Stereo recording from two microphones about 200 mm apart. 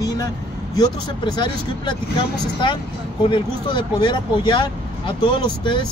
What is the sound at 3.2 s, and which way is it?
Speech, 25° left (ahead or behind).